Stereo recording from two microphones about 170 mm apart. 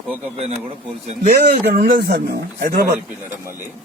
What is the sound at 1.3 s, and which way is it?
A man's voice, 60° right (ahead or behind).